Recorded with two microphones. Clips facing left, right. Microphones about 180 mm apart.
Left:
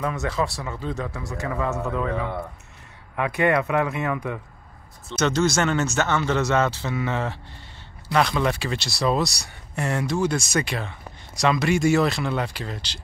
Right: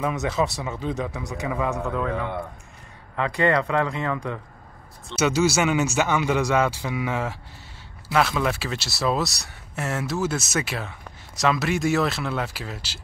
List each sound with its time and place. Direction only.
0.0 s speech: 20° right (ahead or behind)
1.8 s speech: centre (ahead or behind)
3.2 s speech: 15° left (ahead or behind)
5.1 s speech: 10° right (ahead or behind)